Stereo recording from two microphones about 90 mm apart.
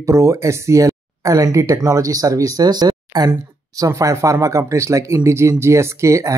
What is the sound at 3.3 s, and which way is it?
Speech, 35° right (ahead or behind).